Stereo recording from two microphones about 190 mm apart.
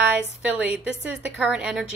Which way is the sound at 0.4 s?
5° right (ahead or behind).